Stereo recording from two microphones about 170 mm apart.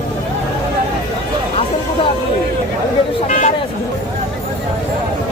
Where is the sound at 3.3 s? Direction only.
45° left (ahead or behind).